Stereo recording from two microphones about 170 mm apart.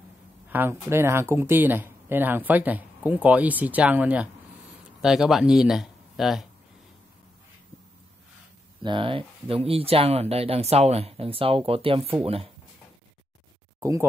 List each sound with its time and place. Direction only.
0.5 s speech: 10° right (ahead or behind)
8.8 s speech: 30° right (ahead or behind)
13.7 s speech: 15° right (ahead or behind)